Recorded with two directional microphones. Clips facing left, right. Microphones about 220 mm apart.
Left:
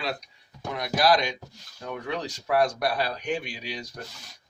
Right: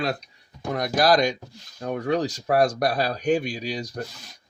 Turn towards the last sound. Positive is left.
turn(degrees=-40)  # may be behind; listen again after turning